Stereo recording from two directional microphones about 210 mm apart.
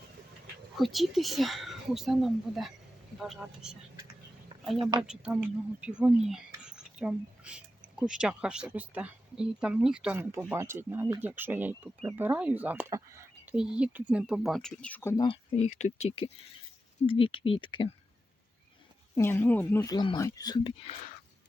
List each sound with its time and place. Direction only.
0.8 s speech: centre (ahead or behind)
4.8 s speech: 20° right (ahead or behind)
5.0 s speech: 5° right (ahead or behind); by 15.4 s 20° left (ahead or behind)
15.5 s speech: 35° left (ahead or behind)
19.1 s speech: 10° left (ahead or behind)